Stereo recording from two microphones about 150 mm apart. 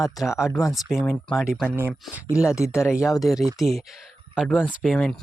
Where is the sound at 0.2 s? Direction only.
5° right (ahead or behind).